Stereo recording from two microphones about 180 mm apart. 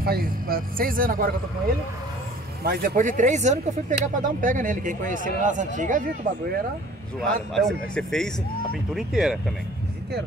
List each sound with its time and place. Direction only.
0.0 s a man's voice: 55° right (ahead or behind)
2.6 s a man's voice: 55° right (ahead or behind)
7.5 s speech: centre (ahead or behind)